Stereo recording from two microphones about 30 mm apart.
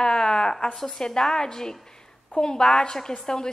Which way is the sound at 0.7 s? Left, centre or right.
Centre.